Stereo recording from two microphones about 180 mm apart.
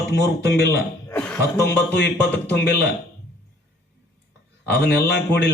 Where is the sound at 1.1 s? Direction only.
5° left (ahead or behind).